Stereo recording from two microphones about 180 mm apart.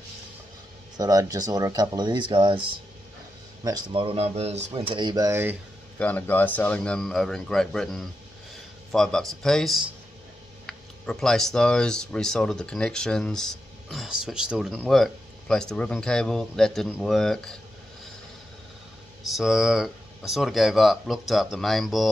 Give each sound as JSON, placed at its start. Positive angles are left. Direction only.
{"t": 0.9, "sound": "speech", "side_deg": -20}
{"t": 3.6, "sound": "speech", "side_deg": -25}
{"t": 5.9, "sound": "speech", "side_deg": 10}
{"t": 19.2, "sound": "speech", "side_deg": 0}